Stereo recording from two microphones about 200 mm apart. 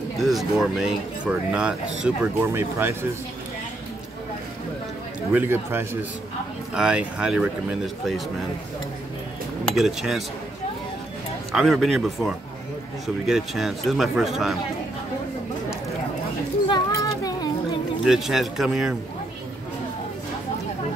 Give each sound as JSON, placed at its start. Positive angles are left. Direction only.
{"t": 0.2, "sound": "speech", "side_deg": 0}
{"t": 5.3, "sound": "a man's voice", "side_deg": -10}
{"t": 9.8, "sound": "speech", "side_deg": 0}
{"t": 11.5, "sound": "speech", "side_deg": 0}
{"t": 16.6, "sound": "a sound", "side_deg": 20}
{"t": 18.0, "sound": "speech", "side_deg": 0}